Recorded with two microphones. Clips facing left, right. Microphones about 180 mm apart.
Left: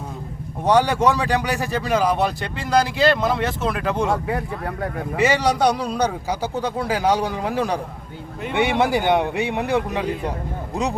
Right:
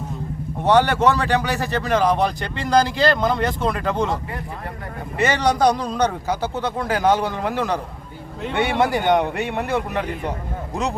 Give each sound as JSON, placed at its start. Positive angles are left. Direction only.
{"t": 0.6, "sound": "speech", "side_deg": 10}
{"t": 4.3, "sound": "speech", "side_deg": 75}
{"t": 5.2, "sound": "speech", "side_deg": 10}